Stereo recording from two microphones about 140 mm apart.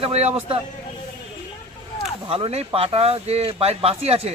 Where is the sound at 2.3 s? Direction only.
40° right (ahead or behind).